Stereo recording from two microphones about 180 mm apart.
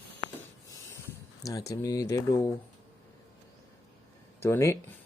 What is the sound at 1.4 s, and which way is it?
Speech, 20° left (ahead or behind).